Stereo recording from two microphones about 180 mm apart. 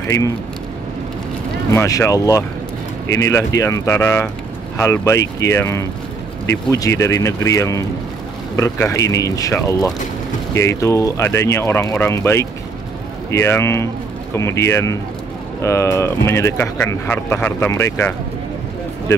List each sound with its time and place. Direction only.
1.7 s speech: 15° left (ahead or behind)